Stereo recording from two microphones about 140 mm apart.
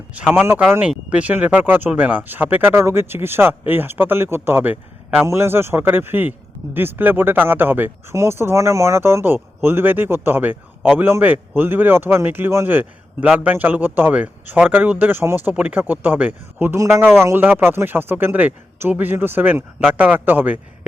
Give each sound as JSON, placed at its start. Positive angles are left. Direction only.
{"t": 0.1, "sound": "a man's voice", "side_deg": -10}